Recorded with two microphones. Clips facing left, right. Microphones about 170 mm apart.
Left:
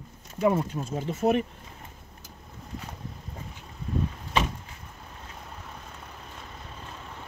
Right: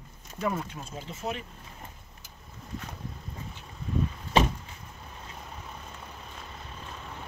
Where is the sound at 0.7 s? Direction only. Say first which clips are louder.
Left 9 dB; 50° left (ahead or behind).